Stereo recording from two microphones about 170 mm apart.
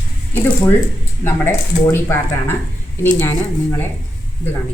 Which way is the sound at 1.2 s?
15° left (ahead or behind).